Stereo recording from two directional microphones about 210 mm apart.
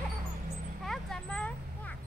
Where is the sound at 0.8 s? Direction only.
Centre (ahead or behind).